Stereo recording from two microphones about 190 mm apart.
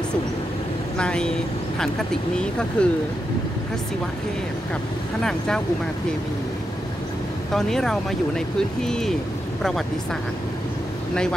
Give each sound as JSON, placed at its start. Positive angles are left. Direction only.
{"t": 0.9, "sound": "speech", "side_deg": 5}
{"t": 2.8, "sound": "speech", "side_deg": 5}
{"t": 7.5, "sound": "speech", "side_deg": 0}